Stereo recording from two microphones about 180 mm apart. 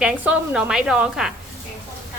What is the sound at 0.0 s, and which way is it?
A woman's voice, 5° right (ahead or behind).